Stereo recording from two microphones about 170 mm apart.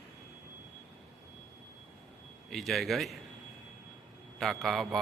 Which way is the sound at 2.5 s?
Centre (ahead or behind).